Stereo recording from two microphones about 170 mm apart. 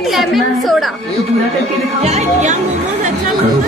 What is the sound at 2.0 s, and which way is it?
Speech, 40° right (ahead or behind).